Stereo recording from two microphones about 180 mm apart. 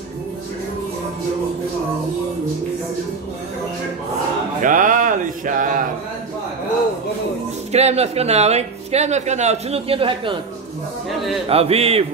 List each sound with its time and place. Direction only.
4.6 s speech: 50° right (ahead or behind)
7.7 s speech: 35° right (ahead or behind)
11.4 s speech: 35° right (ahead or behind)